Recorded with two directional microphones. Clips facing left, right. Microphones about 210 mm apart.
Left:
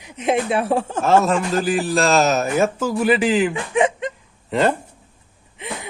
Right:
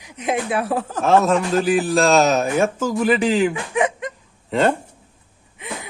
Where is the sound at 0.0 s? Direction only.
25° left (ahead or behind).